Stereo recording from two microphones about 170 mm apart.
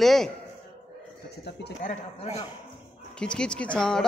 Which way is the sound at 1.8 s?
45° left (ahead or behind).